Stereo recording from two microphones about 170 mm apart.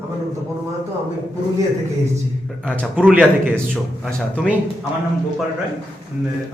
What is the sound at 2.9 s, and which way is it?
Speech, 10° right (ahead or behind).